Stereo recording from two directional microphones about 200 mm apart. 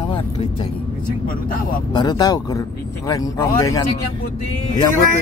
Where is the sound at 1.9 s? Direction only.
20° left (ahead or behind).